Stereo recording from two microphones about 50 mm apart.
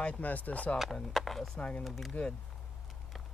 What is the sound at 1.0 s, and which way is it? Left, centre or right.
Speech, centre.